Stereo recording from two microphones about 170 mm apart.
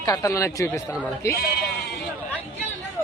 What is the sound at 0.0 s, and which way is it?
Speech, 20° left (ahead or behind).